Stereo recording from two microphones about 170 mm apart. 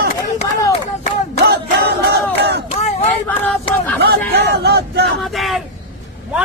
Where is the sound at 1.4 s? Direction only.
75° right (ahead or behind).